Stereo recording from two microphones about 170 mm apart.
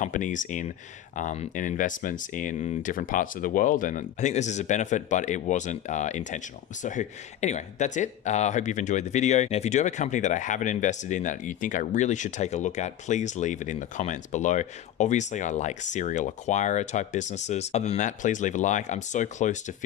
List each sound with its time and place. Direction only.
0.0 s speech: 45° left (ahead or behind)